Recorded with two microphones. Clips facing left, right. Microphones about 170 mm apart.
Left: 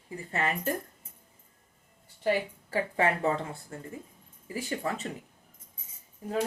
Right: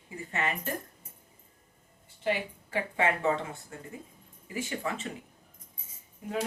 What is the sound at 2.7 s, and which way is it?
Speech, 35° left (ahead or behind).